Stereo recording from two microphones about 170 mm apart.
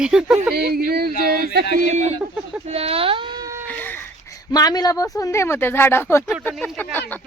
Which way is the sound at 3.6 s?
10° left (ahead or behind).